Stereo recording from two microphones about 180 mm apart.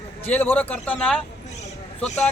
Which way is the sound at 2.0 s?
40° left (ahead or behind).